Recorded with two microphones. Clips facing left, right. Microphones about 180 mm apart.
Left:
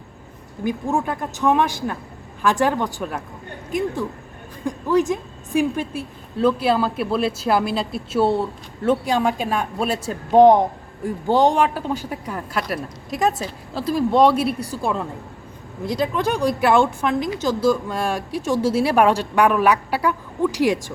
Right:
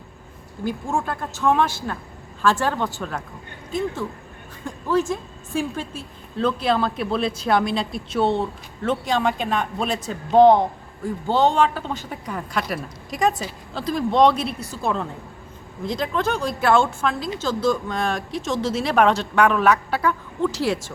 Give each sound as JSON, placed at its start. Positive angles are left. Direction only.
{"t": 0.6, "sound": "a woman's voice", "side_deg": 15}